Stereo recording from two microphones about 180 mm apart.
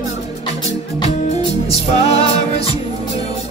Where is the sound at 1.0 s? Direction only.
35° left (ahead or behind).